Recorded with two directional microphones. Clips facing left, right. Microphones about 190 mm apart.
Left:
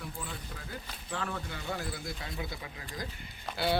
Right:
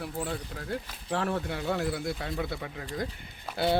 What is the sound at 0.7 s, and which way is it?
Speech, 70° right (ahead or behind).